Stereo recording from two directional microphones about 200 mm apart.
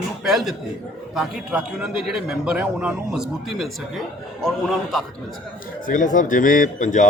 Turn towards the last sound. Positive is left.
turn(degrees=40)  # may be behind; listen again after turning